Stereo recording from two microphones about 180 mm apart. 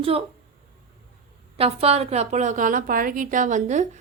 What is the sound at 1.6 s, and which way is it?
A woman's voice, 35° right (ahead or behind).